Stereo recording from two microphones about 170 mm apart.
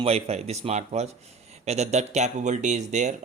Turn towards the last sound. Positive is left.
turn(degrees=-45)  # may be behind; listen again after turning